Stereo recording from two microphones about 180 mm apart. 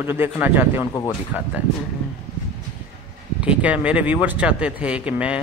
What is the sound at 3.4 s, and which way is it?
A man's voice, 5° right (ahead or behind).